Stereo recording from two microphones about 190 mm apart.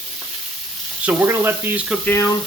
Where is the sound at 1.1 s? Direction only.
10° right (ahead or behind).